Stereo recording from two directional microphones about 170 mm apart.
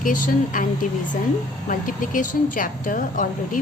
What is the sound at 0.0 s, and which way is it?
A woman's voice, 50° left (ahead or behind).